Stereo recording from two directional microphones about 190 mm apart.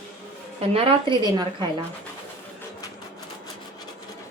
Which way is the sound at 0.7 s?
25° right (ahead or behind).